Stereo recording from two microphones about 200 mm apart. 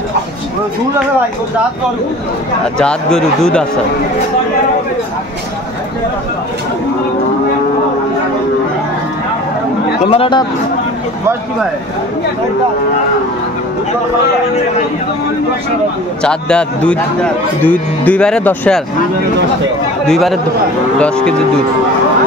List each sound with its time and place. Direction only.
2.8 s a man's voice: 5° left (ahead or behind)
10.0 s speech: 30° left (ahead or behind)
16.2 s a man's voice: 5° left (ahead or behind)
20.1 s a man's voice: centre (ahead or behind)